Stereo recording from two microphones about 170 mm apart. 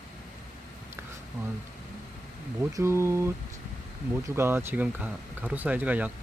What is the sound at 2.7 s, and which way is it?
Speech, 15° right (ahead or behind).